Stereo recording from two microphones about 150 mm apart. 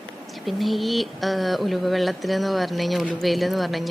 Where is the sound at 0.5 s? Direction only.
Centre (ahead or behind).